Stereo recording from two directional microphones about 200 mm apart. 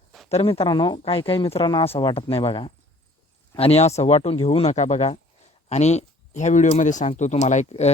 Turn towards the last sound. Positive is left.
turn(degrees=35)  # may be behind; listen again after turning